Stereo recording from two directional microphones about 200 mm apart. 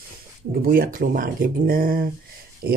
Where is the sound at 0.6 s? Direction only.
45° right (ahead or behind).